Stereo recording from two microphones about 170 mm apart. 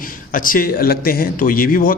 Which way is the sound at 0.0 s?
55° left (ahead or behind).